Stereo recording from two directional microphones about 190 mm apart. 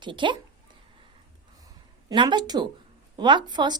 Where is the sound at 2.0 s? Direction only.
25° right (ahead or behind).